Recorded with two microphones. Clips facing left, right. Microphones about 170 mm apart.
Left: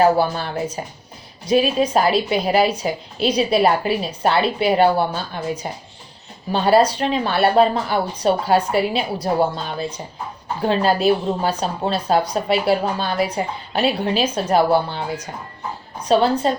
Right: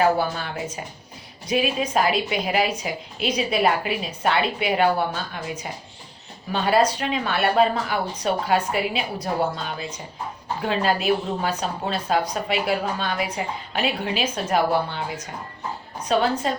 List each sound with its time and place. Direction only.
0.0 s a woman's voice: 35° left (ahead or behind)